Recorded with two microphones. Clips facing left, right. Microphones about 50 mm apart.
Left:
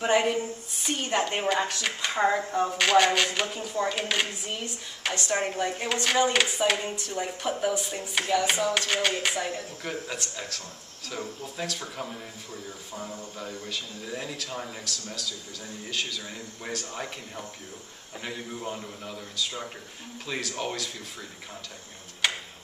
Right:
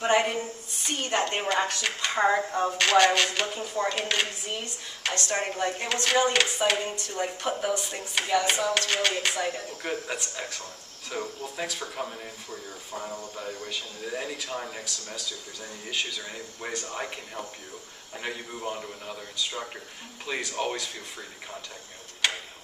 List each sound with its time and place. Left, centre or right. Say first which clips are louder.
0.0 s speech: even; centre
3.2 s a sound: even; centre
3.6 s a woman's voice: even; centre
8.7 s a sound: even; centre
9.8 s speech: right 2 dB; centre
12.9 s speech: right 3 dB; right
13.7 s speech: right 1 dB; centre
22.2 s speech: even; centre